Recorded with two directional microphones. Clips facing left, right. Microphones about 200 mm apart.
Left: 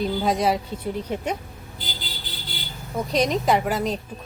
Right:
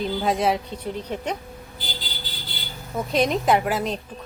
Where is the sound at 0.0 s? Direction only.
Centre (ahead or behind).